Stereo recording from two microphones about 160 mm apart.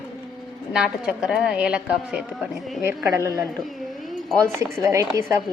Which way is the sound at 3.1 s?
20° right (ahead or behind).